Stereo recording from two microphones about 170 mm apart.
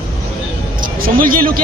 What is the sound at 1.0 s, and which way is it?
Speech, 55° right (ahead or behind).